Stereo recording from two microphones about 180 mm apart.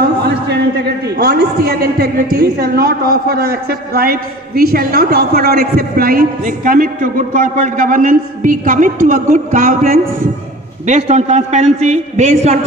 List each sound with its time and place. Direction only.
1.1 s a woman's voice: 60° right (ahead or behind)
10.9 s a man's voice: 35° right (ahead or behind)